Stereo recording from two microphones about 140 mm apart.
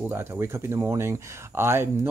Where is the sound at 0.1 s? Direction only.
20° right (ahead or behind).